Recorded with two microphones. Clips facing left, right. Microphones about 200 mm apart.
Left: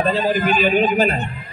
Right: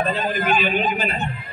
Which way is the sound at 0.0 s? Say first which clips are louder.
Left 5 dB; 30° left (ahead or behind).